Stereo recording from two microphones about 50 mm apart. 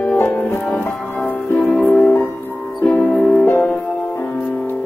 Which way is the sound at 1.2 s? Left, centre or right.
Left.